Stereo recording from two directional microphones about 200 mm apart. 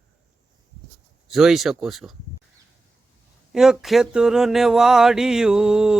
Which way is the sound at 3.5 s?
Centre (ahead or behind).